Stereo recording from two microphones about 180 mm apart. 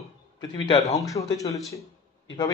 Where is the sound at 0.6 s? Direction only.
20° left (ahead or behind).